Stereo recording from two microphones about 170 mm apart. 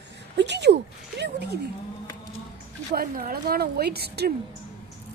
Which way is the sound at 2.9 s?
60° right (ahead or behind).